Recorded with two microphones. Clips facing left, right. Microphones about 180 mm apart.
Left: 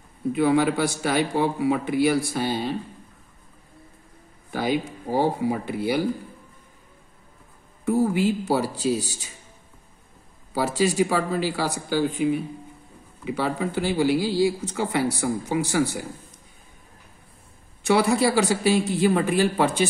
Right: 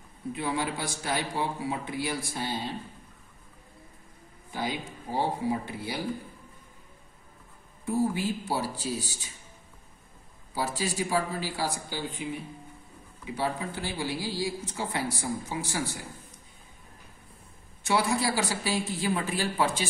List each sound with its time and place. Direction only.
0.3 s a man's voice: 75° left (ahead or behind)
4.5 s a man's voice: 75° left (ahead or behind)
7.8 s a man's voice: 70° left (ahead or behind)
10.5 s a man's voice: 70° left (ahead or behind)
13.3 s a man's voice: 75° left (ahead or behind)
17.8 s speech: 70° left (ahead or behind)